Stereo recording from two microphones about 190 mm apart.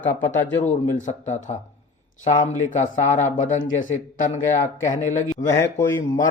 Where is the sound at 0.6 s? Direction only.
40° left (ahead or behind).